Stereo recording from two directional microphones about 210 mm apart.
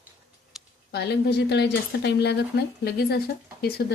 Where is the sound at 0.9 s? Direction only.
50° left (ahead or behind).